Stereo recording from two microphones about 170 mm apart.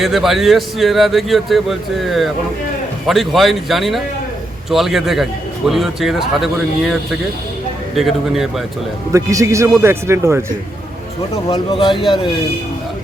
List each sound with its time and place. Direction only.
0.0 s speech: centre (ahead or behind)
7.9 s speech: centre (ahead or behind)
9.1 s speech: 20° right (ahead or behind)
11.4 s a man's voice: 30° left (ahead or behind)